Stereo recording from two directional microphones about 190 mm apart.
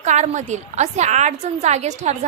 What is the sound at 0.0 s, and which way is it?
A woman's voice, 40° right (ahead or behind).